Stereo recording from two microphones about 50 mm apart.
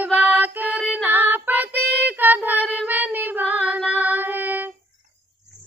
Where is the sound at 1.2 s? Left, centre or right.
Right.